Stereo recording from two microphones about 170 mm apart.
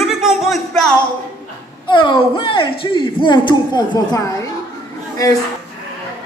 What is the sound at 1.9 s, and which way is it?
A woman's voice, 30° left (ahead or behind).